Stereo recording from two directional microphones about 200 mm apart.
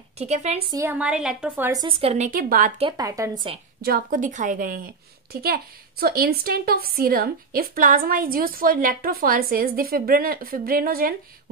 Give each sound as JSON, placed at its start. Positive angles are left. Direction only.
{"t": 0.2, "sound": "a woman's voice", "side_deg": -35}
{"t": 0.7, "sound": "a woman's voice", "side_deg": -10}
{"t": 1.7, "sound": "a woman's voice", "side_deg": -20}
{"t": 2.8, "sound": "speech", "side_deg": -20}
{"t": 3.8, "sound": "a woman's voice", "side_deg": -45}